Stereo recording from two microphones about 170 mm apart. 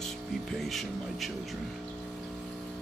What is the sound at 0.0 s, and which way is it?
Music, centre (ahead or behind).